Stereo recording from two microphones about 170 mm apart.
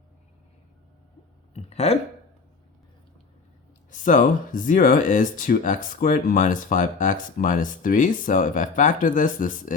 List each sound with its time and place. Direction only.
1.5 s speech: 40° left (ahead or behind)
3.9 s speech: 50° left (ahead or behind)